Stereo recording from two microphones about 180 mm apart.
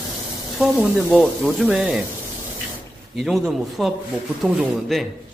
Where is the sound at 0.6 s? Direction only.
Centre (ahead or behind).